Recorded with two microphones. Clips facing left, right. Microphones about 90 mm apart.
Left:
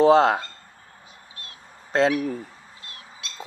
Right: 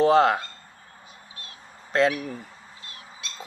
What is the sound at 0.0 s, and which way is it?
Speech, 25° left (ahead or behind).